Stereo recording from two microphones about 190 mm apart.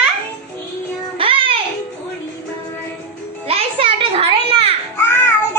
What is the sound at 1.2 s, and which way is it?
Music, 30° right (ahead or behind).